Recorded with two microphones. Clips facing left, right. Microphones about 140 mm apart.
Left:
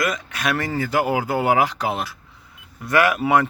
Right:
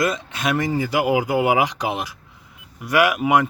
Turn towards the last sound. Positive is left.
turn(degrees=-15)  # may be behind; listen again after turning